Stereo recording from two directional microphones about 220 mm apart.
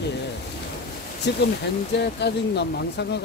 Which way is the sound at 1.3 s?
50° left (ahead or behind).